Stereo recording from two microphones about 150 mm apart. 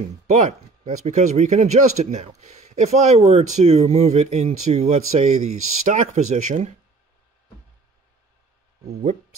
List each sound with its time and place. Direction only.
0.3 s speech: 50° right (ahead or behind)